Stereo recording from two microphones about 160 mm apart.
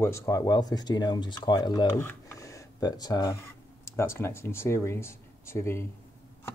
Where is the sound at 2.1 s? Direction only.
20° left (ahead or behind).